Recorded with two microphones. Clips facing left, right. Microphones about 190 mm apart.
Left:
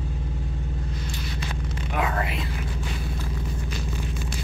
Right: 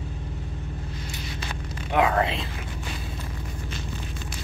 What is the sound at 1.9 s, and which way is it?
Speech, 25° right (ahead or behind).